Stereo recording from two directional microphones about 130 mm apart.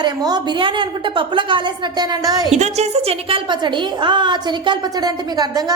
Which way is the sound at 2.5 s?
60° right (ahead or behind).